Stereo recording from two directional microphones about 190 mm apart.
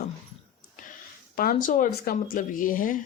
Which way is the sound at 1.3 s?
50° left (ahead or behind).